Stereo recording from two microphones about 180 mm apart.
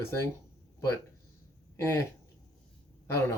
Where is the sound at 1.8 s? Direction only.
15° left (ahead or behind).